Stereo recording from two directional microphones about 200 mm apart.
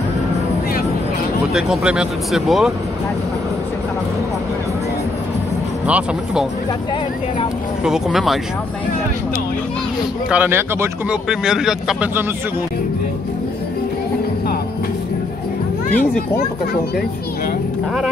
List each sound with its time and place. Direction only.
1.5 s speech: centre (ahead or behind)
5.9 s speech: 5° right (ahead or behind)
7.8 s speech: centre (ahead or behind)
10.3 s speech: 10° right (ahead or behind)